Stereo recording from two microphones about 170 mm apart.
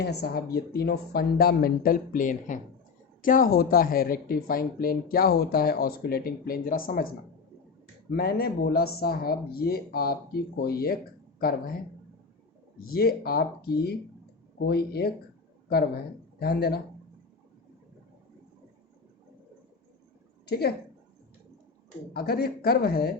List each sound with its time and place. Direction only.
0.0 s speech: 70° left (ahead or behind)
8.1 s speech: 65° left (ahead or behind)
12.8 s speech: 60° left (ahead or behind)
16.4 s speech: 70° left (ahead or behind)
20.5 s speech: 70° left (ahead or behind)
22.1 s speech: 65° left (ahead or behind)